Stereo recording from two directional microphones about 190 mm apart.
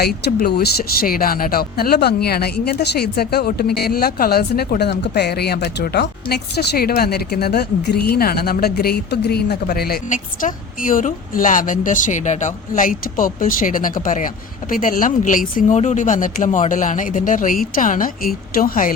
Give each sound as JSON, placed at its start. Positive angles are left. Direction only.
{"t": 0.0, "sound": "speech", "side_deg": 55}